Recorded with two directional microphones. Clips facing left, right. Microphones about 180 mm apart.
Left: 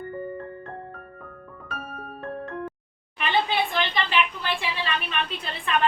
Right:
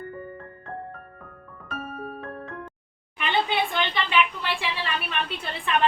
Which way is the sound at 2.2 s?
Centre (ahead or behind).